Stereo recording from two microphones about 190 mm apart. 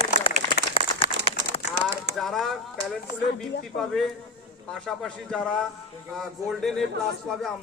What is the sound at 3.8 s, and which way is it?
A man's voice, centre (ahead or behind).